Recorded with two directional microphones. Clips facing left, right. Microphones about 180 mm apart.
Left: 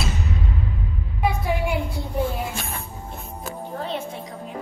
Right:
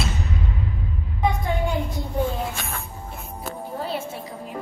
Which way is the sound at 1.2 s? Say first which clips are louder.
Even; 10° left (ahead or behind).